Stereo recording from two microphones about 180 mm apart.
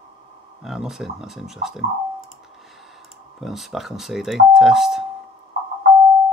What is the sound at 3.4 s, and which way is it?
Speech, centre (ahead or behind).